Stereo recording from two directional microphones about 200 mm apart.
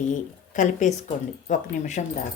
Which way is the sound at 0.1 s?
35° left (ahead or behind).